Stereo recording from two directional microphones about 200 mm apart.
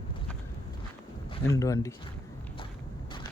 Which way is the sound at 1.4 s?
15° left (ahead or behind).